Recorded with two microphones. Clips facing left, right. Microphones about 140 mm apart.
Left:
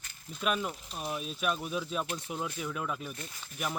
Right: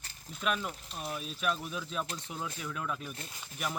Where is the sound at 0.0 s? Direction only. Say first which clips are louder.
Left 1 dB; 35° right (ahead or behind).